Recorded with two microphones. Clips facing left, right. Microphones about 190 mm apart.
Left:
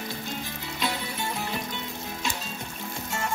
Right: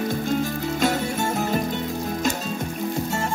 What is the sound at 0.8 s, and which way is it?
Music, 45° right (ahead or behind).